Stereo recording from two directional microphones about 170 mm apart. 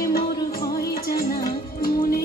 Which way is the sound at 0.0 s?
60° left (ahead or behind).